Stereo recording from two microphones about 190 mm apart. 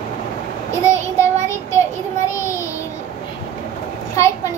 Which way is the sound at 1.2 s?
15° left (ahead or behind).